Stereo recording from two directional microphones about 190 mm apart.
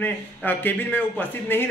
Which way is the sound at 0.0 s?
10° left (ahead or behind).